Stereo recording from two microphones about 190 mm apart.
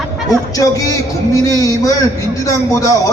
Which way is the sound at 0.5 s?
20° left (ahead or behind).